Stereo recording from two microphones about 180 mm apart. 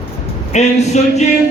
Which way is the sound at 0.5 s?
40° left (ahead or behind).